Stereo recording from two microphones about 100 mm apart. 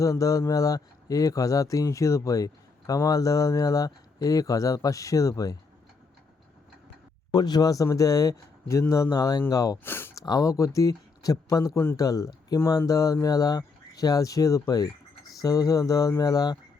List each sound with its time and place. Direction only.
0.0 s speech: 35° left (ahead or behind)
7.3 s speech: 40° left (ahead or behind)
9.8 s speech: 20° left (ahead or behind)
10.2 s speech: 40° left (ahead or behind)